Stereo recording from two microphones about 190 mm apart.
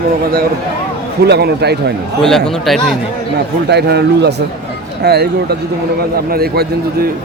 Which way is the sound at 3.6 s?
60° right (ahead or behind).